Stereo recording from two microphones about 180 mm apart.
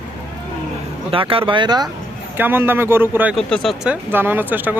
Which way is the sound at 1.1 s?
30° right (ahead or behind).